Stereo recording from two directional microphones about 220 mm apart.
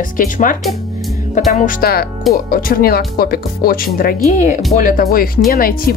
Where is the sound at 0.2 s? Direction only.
40° left (ahead or behind).